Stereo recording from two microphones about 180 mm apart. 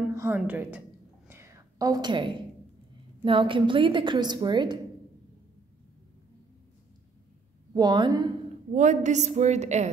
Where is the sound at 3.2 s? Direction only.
30° right (ahead or behind).